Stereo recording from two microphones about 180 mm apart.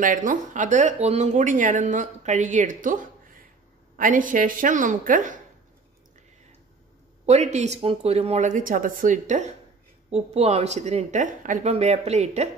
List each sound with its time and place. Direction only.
0.0 s speech: 45° right (ahead or behind)
7.2 s speech: 40° right (ahead or behind)